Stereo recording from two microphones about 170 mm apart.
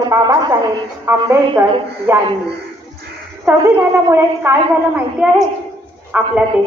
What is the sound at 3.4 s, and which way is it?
A woman's voice, 15° right (ahead or behind).